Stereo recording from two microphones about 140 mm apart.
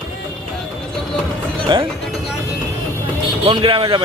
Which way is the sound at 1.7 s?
35° right (ahead or behind).